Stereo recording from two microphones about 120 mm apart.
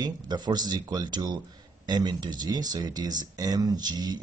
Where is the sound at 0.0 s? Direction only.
35° right (ahead or behind).